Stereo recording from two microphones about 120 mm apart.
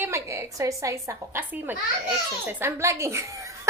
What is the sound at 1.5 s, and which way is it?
A child's voice, 15° right (ahead or behind).